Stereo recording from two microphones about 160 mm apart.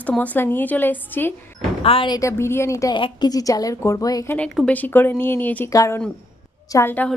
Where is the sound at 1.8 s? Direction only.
35° left (ahead or behind).